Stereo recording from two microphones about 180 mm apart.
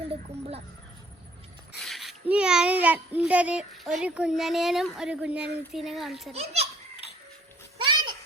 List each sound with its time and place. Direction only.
0.1 s speech: 35° right (ahead or behind)
1.8 s a child's voice: centre (ahead or behind)
6.3 s a child's voice: 35° right (ahead or behind)
7.9 s a sound: 25° right (ahead or behind)